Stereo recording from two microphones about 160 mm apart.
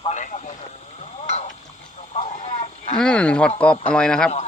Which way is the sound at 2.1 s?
40° left (ahead or behind).